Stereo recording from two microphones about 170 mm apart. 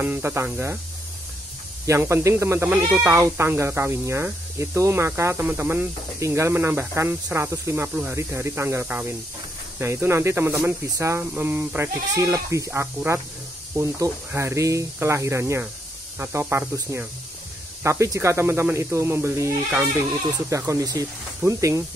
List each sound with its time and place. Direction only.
0.0 s speech: 15° right (ahead or behind)
1.9 s speech: 15° right (ahead or behind)